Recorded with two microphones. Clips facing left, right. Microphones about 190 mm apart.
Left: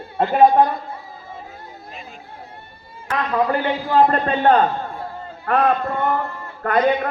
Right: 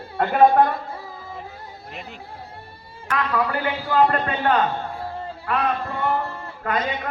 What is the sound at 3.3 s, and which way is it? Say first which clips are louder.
A man's voice: left 6 dB; 35° left (ahead or behind).